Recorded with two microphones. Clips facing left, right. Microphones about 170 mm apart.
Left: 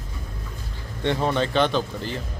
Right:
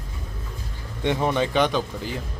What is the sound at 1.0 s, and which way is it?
Speech, 15° right (ahead or behind).